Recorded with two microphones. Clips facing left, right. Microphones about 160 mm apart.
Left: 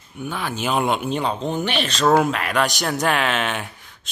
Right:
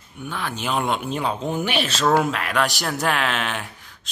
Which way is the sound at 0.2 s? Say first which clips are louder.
Left 3 dB; 5° left (ahead or behind).